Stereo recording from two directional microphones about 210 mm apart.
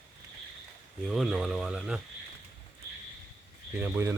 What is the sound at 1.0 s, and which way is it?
Speech, centre (ahead or behind).